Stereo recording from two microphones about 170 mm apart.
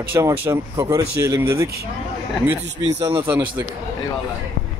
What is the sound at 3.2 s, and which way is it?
Speech, 10° right (ahead or behind).